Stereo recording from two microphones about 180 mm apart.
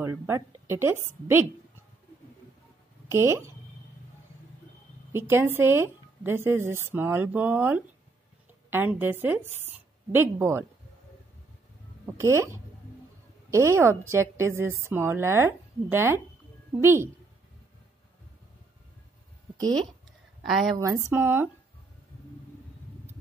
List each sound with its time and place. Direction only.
0.0 s a woman's voice: 15° right (ahead or behind)
3.1 s a woman's voice: 15° right (ahead or behind)
5.1 s a woman's voice: 10° right (ahead or behind)
12.1 s a woman's voice: 15° right (ahead or behind)
20.8 s a woman's voice: 15° right (ahead or behind)